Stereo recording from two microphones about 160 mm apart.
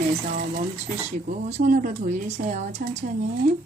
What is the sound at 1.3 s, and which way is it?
Speech, 45° right (ahead or behind).